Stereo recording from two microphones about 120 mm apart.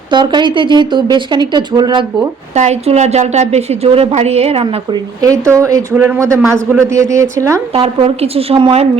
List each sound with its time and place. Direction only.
0.1 s speech: 40° right (ahead or behind)
2.6 s a woman's voice: 65° right (ahead or behind); by 4.9 s 50° right (ahead or behind)
5.2 s speech: 25° right (ahead or behind)
7.7 s a woman's voice: 55° right (ahead or behind)